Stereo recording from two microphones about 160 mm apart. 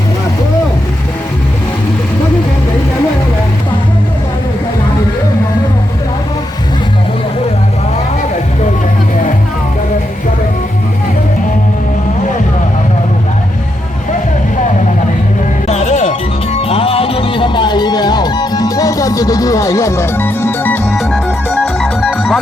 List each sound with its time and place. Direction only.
15.6 s music: 45° left (ahead or behind); by 20.8 s 10° left (ahead or behind)
20.9 s music: centre (ahead or behind)